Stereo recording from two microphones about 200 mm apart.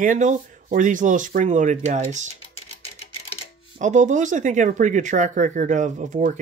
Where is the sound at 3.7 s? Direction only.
40° right (ahead or behind).